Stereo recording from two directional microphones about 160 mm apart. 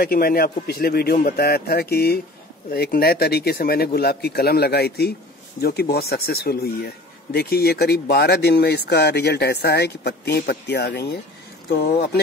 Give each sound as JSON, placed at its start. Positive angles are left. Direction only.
{"t": 0.0, "sound": "a man's voice", "side_deg": 65}
{"t": 11.8, "sound": "speech", "side_deg": 75}